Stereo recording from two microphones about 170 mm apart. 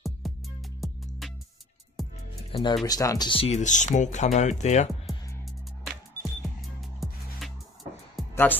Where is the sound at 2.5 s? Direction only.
25° left (ahead or behind); by 4.8 s 45° left (ahead or behind).